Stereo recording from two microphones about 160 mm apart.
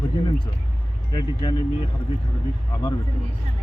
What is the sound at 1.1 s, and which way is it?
Speech, 25° left (ahead or behind).